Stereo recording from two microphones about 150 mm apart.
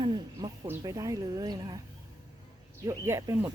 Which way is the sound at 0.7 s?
25° right (ahead or behind).